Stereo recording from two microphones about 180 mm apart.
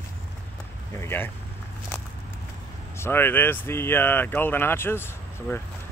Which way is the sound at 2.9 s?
15° left (ahead or behind).